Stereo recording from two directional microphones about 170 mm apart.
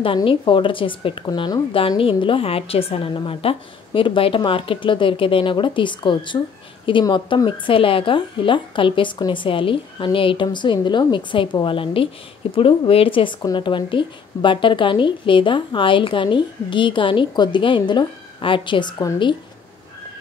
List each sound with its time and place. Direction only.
0.0 s a woman's voice: 30° left (ahead or behind)